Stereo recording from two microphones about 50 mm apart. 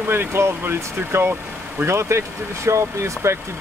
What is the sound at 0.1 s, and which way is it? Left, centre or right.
Speech, right.